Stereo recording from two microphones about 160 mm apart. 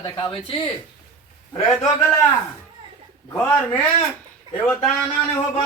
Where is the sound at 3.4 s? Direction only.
10° left (ahead or behind).